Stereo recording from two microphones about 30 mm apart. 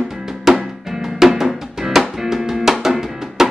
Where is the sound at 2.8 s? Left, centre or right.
Centre.